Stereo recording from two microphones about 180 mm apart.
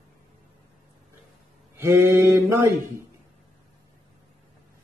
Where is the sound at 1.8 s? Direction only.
15° right (ahead or behind).